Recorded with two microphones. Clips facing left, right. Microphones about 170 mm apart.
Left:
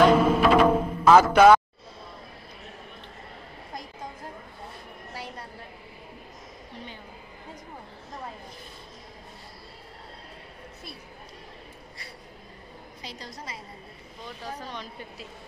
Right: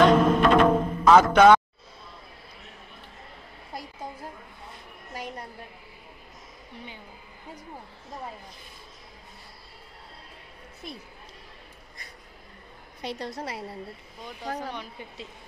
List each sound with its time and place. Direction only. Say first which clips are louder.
0.0 s music: even; 5° left (ahead or behind)
5.1 s a sound: right 3 dB; 15° right (ahead or behind)
13.0 s a woman's voice: right 9 dB; 60° right (ahead or behind)